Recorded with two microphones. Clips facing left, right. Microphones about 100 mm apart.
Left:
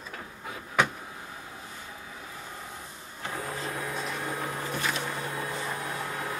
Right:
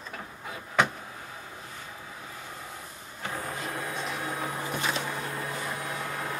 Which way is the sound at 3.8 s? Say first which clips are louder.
Even; 5° right (ahead or behind).